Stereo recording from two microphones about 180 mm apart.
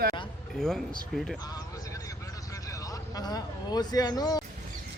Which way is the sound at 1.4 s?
20° left (ahead or behind).